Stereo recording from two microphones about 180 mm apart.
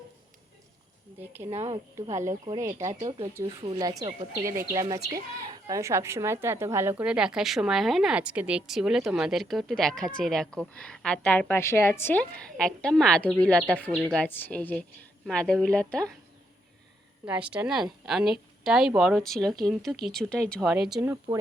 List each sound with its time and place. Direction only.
1.2 s speech: 10° right (ahead or behind)
1.5 s speech: 20° right (ahead or behind)
2.8 s a woman's voice: 30° right (ahead or behind)
5.0 s a woman's voice: 20° right (ahead or behind); by 16.1 s 5° left (ahead or behind)
17.2 s a woman's voice: 5° right (ahead or behind)